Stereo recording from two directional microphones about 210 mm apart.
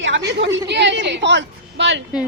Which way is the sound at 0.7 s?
55° right (ahead or behind).